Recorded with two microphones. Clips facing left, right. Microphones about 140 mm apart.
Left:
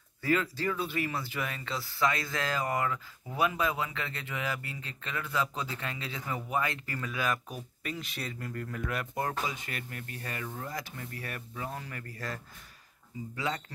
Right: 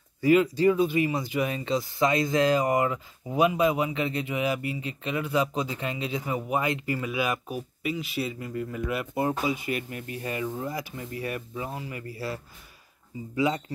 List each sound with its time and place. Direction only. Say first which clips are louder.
0.2 s speech: right 9 dB; 15° right (ahead or behind)
13.4 s speech: right 9 dB; 10° right (ahead or behind)